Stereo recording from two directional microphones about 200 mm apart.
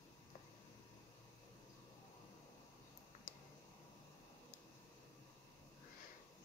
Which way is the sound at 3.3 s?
45° left (ahead or behind).